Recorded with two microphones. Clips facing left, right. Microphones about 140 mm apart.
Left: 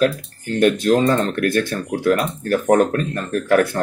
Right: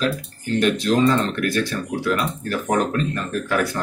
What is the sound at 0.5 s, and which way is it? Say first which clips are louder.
Speech: left 3 dB; 50° left (ahead or behind).